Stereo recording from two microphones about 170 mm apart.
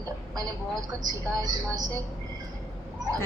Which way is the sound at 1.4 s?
25° right (ahead or behind).